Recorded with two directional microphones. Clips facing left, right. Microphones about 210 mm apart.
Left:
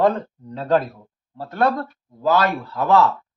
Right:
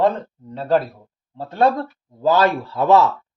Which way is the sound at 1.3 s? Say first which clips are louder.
Right 2 dB; 25° right (ahead or behind).